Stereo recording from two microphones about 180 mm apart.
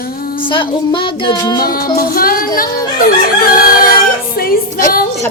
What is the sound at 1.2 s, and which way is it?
Child singing, 25° left (ahead or behind).